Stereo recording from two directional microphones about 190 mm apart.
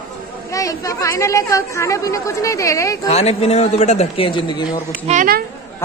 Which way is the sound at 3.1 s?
35° left (ahead or behind).